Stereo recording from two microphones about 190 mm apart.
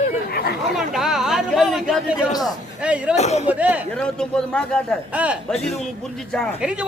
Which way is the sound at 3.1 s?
35° left (ahead or behind).